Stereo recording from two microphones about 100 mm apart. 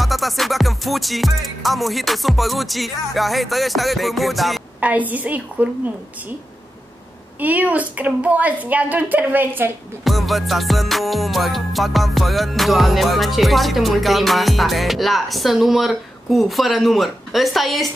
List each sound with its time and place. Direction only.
0.0 s music: centre (ahead or behind)
4.7 s a woman's voice: 15° right (ahead or behind)
7.3 s a woman's voice: 15° right (ahead or behind)
10.0 s music: centre (ahead or behind)